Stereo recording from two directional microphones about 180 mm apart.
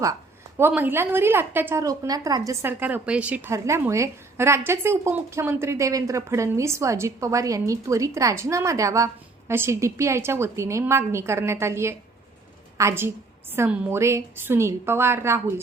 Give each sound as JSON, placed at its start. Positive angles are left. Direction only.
{"t": 0.6, "sound": "a woman's voice", "side_deg": -10}